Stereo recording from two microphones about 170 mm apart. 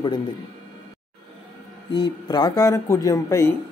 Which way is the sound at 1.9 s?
25° left (ahead or behind).